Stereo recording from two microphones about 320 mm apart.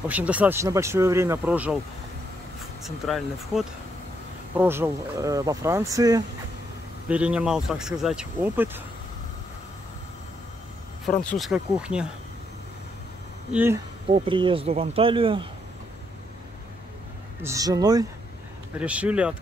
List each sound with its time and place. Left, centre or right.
0.1 s speech: centre
2.8 s speech: centre
11.1 s speech: centre
13.5 s speech: centre
17.4 s speech: centre